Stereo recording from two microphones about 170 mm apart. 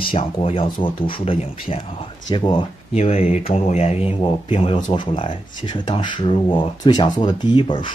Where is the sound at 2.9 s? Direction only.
40° left (ahead or behind).